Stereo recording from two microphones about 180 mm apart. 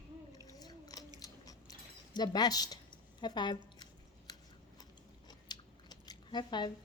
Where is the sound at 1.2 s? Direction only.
20° left (ahead or behind).